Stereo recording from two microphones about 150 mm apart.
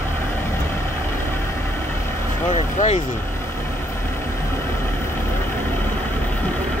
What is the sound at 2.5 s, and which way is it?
Vehicle, 50° left (ahead or behind).